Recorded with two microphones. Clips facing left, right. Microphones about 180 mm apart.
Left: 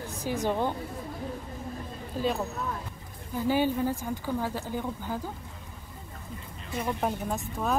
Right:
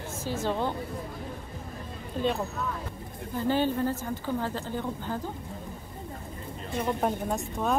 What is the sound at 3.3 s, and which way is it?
Speech, 10° left (ahead or behind).